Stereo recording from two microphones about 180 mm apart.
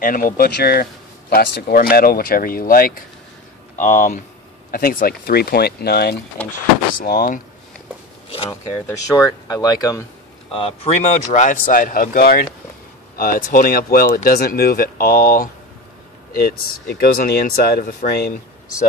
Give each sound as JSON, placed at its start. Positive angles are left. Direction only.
{"t": 0.0, "sound": "speech", "side_deg": 50}
{"t": 7.0, "sound": "speech", "side_deg": 50}
{"t": 8.8, "sound": "speech", "side_deg": 20}
{"t": 10.5, "sound": "speech", "side_deg": 30}
{"t": 16.3, "sound": "speech", "side_deg": 65}